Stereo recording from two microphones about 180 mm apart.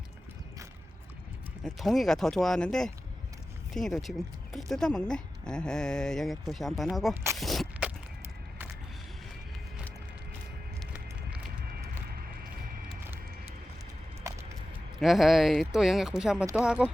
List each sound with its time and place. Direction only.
1.6 s speech: centre (ahead or behind)
7.3 s a sound: centre (ahead or behind)
14.3 s vehicle: 15° right (ahead or behind)
15.0 s speech: centre (ahead or behind)